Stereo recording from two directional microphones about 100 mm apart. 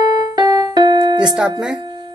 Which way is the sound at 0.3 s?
35° right (ahead or behind).